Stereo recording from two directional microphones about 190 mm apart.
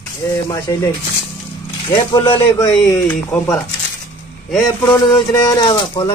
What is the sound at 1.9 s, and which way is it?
Speech, 25° left (ahead or behind).